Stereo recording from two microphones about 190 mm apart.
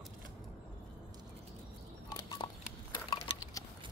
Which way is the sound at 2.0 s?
25° left (ahead or behind).